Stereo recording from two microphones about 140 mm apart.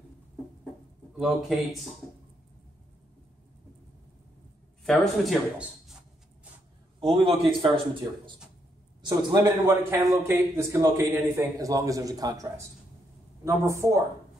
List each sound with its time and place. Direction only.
1.1 s speech: 5° right (ahead or behind)
4.8 s speech: 5° left (ahead or behind)
7.0 s speech: 40° right (ahead or behind)
9.7 s a man's voice: 20° right (ahead or behind)